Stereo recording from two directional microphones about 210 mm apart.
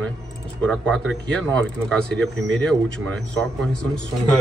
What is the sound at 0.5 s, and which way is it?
A man's voice, 5° left (ahead or behind).